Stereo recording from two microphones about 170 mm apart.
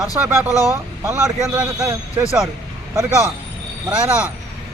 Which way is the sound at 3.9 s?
10° right (ahead or behind).